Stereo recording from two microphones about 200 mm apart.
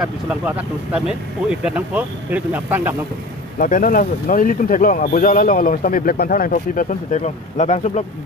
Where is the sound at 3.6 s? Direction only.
45° left (ahead or behind).